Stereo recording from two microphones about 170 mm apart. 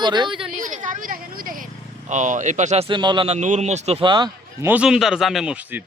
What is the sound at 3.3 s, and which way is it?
Speech, 45° right (ahead or behind).